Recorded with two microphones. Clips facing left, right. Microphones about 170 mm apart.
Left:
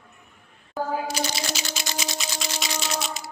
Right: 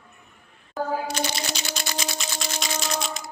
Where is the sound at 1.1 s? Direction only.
5° left (ahead or behind).